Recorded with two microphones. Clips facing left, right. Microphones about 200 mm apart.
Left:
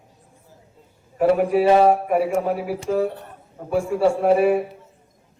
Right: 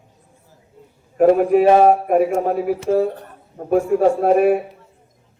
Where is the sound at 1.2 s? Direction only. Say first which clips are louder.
Right 4 dB; 45° right (ahead or behind).